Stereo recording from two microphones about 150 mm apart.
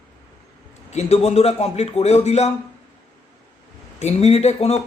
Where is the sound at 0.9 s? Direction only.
45° left (ahead or behind).